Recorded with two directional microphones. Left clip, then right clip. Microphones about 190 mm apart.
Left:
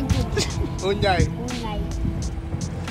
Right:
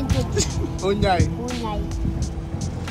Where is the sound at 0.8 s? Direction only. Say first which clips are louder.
Even; 55° right (ahead or behind).